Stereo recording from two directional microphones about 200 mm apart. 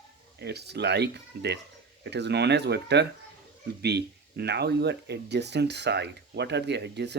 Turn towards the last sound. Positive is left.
turn(degrees=-60)  # may be behind; listen again after turning